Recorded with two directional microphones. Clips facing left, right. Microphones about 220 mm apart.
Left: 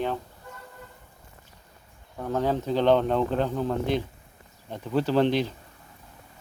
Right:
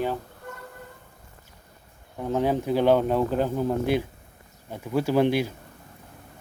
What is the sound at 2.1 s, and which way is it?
Speech, 15° right (ahead or behind).